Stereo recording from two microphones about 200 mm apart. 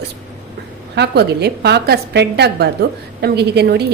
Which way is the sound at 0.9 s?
55° right (ahead or behind).